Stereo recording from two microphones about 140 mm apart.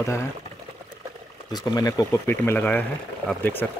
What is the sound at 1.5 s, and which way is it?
Speech, 25° left (ahead or behind).